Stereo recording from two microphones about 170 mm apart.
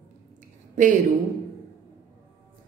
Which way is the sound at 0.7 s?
50° right (ahead or behind).